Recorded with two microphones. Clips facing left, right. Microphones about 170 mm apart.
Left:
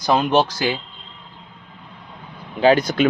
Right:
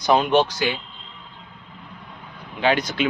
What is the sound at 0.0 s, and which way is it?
Speech, 35° left (ahead or behind).